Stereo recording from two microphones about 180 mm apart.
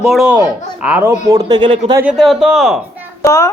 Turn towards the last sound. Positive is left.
turn(degrees=15)  # may be behind; listen again after turning